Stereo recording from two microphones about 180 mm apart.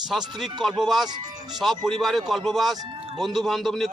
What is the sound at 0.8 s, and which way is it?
Speech, centre (ahead or behind).